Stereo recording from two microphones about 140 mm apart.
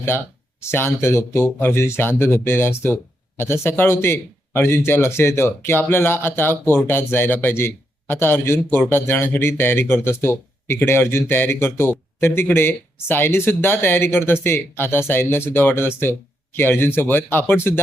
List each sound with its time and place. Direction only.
0.7 s speech: 15° left (ahead or behind)